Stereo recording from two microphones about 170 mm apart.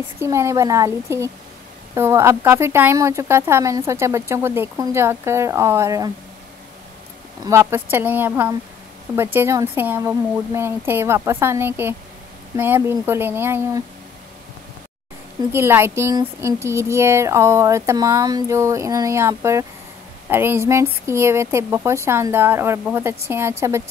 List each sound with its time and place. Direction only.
0.2 s speech: 15° right (ahead or behind)
7.4 s speech: 15° right (ahead or behind)
15.5 s speech: 15° right (ahead or behind)